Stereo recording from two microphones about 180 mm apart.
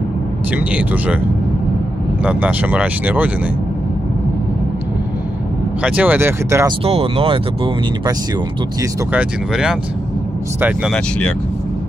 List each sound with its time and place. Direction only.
0.5 s speech: 10° right (ahead or behind)
2.2 s speech: 10° right (ahead or behind)
5.8 s speech: 5° right (ahead or behind)
6.8 s speech: 35° right (ahead or behind)
9.1 s speech: 5° right (ahead or behind)